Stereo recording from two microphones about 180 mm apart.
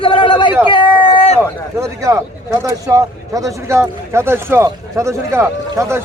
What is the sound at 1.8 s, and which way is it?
A man's voice, 15° right (ahead or behind).